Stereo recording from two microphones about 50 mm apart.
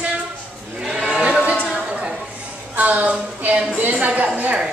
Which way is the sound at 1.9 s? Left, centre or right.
Centre.